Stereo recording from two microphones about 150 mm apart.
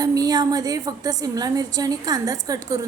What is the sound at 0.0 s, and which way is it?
A woman's voice, 25° right (ahead or behind).